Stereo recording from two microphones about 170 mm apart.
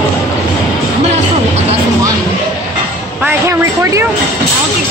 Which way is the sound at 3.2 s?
15° right (ahead or behind).